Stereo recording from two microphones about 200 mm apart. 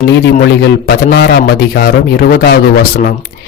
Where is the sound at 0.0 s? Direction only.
55° left (ahead or behind).